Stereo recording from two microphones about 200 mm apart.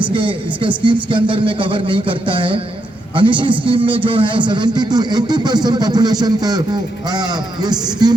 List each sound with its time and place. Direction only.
0.1 s a man's voice: 25° right (ahead or behind)